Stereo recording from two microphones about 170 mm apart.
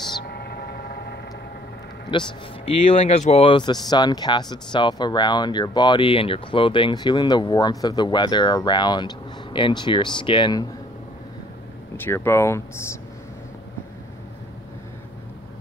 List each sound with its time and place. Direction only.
0.3 s vehicle: 70° left (ahead or behind)
2.1 s speech: 30° left (ahead or behind)
12.0 s speech: 15° left (ahead or behind)